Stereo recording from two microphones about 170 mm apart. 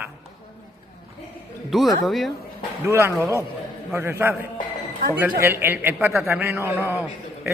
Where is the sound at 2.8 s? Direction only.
15° right (ahead or behind).